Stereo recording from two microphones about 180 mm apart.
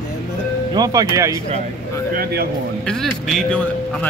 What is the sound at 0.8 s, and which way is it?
Speech, 20° right (ahead or behind).